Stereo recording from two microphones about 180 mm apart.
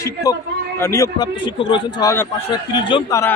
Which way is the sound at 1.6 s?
25° left (ahead or behind).